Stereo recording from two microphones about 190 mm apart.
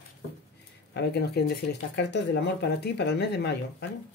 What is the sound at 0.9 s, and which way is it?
Speech, 60° left (ahead or behind).